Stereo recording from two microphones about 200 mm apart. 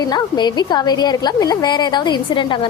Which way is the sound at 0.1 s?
20° left (ahead or behind).